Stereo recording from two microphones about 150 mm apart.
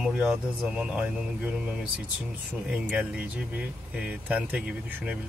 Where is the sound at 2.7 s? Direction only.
10° right (ahead or behind).